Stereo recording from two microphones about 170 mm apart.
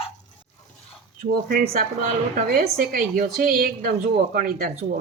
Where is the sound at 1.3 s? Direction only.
60° right (ahead or behind).